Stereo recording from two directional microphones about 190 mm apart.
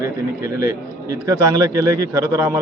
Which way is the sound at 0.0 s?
15° right (ahead or behind).